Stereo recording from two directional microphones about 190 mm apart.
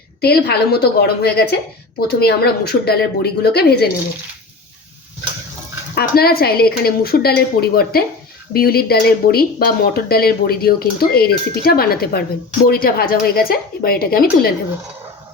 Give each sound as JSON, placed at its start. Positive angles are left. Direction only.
{"t": 0.2, "sound": "speech", "side_deg": 55}
{"t": 5.9, "sound": "speech", "side_deg": 55}